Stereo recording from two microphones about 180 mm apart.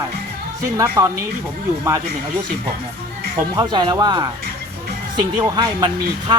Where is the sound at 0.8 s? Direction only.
20° right (ahead or behind).